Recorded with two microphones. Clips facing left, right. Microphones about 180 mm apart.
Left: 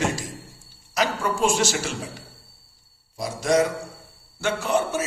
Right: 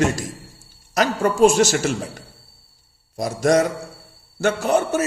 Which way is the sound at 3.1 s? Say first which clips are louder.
Right 4 dB; 45° right (ahead or behind).